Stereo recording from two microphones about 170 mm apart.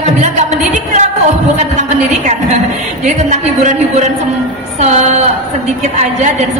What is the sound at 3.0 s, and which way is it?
A woman's voice, 45° right (ahead or behind).